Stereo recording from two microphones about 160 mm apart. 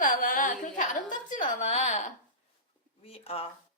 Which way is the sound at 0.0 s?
60° left (ahead or behind).